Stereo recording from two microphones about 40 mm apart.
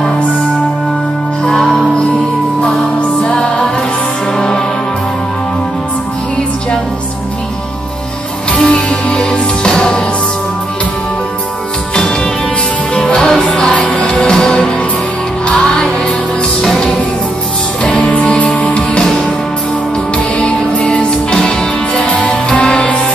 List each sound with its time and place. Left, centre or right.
1.4 s music: centre
3.2 s music: left
8.5 s music: left
12.9 s music: left
13.7 s music: left
14.2 s music: centre
16.6 s music: centre
17.8 s music: left
20.8 s music: left